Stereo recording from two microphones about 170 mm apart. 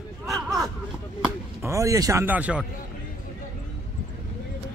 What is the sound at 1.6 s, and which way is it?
Speech, 20° right (ahead or behind).